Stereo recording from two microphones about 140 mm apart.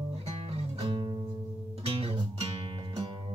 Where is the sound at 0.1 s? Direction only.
40° right (ahead or behind).